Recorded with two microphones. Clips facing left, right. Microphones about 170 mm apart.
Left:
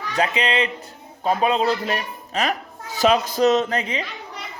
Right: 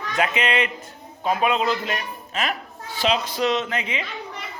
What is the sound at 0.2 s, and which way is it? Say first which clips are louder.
A man's voice: left 1 dB; 35° left (ahead or behind).